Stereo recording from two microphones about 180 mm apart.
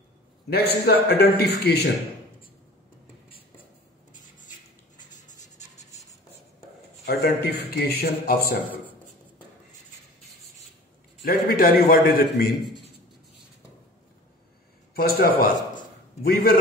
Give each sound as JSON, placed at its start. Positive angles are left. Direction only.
{"t": 0.5, "sound": "speech", "side_deg": 60}
{"t": 3.3, "sound": "a sound", "side_deg": 30}
{"t": 7.1, "sound": "speech", "side_deg": 65}
{"t": 11.2, "sound": "speech", "side_deg": 55}
{"t": 15.0, "sound": "speech", "side_deg": 60}